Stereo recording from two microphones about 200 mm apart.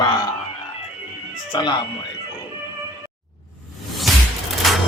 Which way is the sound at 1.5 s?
20° left (ahead or behind).